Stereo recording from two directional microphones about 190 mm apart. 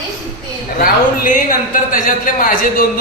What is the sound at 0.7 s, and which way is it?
A man's voice, 45° left (ahead or behind).